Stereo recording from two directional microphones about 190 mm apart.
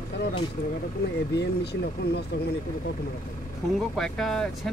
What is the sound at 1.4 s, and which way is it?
Speech, 60° left (ahead or behind).